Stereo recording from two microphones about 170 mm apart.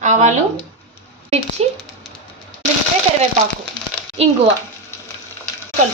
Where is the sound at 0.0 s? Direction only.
45° right (ahead or behind).